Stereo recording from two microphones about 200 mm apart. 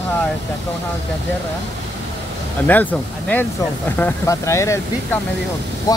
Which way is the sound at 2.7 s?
10° left (ahead or behind).